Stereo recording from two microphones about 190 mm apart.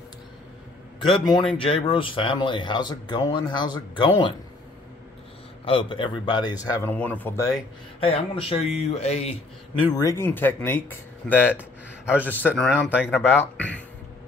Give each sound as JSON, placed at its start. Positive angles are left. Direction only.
{"t": 1.6, "sound": "speech", "side_deg": 30}
{"t": 5.7, "sound": "speech", "side_deg": 25}
{"t": 8.0, "sound": "speech", "side_deg": 30}
{"t": 9.9, "sound": "speech", "side_deg": 15}